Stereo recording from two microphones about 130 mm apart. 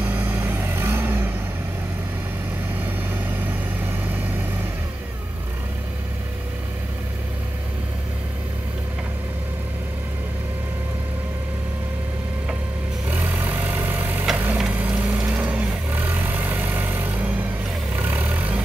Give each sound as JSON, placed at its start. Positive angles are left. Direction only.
{"t": 0.1, "sound": "vehicle", "side_deg": -15}
{"t": 13.1, "sound": "vehicle", "side_deg": -15}